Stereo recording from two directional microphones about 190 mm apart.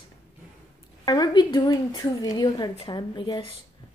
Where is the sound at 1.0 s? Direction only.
20° left (ahead or behind).